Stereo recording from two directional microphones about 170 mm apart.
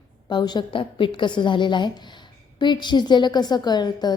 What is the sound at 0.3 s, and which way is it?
A woman's voice, 25° left (ahead or behind).